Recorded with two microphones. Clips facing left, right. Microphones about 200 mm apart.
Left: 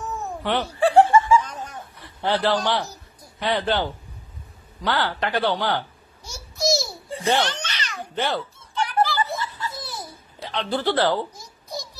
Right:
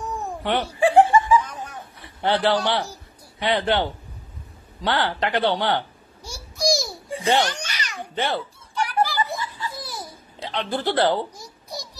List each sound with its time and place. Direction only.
0.0 s laughter: 15° right (ahead or behind)
2.3 s speech: 10° right (ahead or behind)
4.8 s a child's voice: 20° right (ahead or behind)
6.6 s babbling: 15° right (ahead or behind)